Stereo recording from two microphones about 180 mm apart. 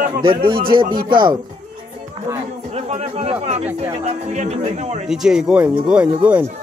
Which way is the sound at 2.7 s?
35° right (ahead or behind).